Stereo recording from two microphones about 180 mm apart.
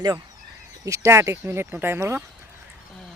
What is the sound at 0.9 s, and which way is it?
Speech, 15° right (ahead or behind).